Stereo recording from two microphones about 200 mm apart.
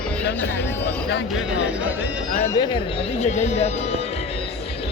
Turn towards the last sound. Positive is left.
turn(degrees=35)  # may be behind; listen again after turning